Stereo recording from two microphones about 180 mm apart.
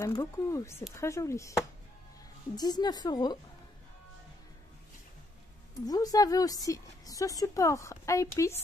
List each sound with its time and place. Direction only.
0.0 s a woman's voice: 15° left (ahead or behind)
5.9 s a woman's voice: 20° left (ahead or behind)